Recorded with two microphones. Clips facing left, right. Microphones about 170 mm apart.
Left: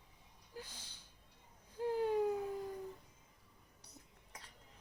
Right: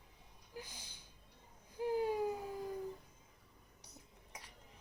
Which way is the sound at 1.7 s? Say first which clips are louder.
Left 1 dB; 10° right (ahead or behind).